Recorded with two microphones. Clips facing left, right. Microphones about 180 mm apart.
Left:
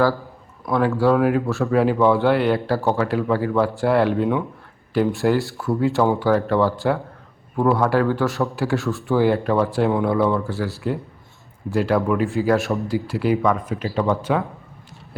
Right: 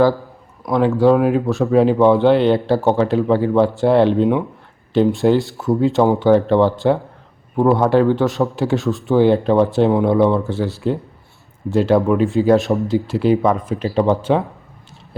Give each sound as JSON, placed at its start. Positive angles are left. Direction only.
{"t": 0.6, "sound": "speech", "side_deg": -20}